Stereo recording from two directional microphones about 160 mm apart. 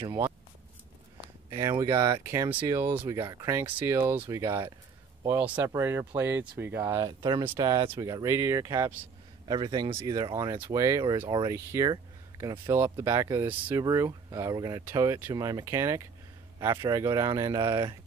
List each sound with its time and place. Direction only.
1.5 s speech: 20° right (ahead or behind)
3.2 s speech: 25° right (ahead or behind)
3.5 s speech: 15° right (ahead or behind)